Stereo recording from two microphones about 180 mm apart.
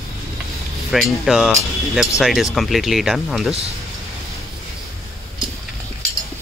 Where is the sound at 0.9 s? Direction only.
Centre (ahead or behind).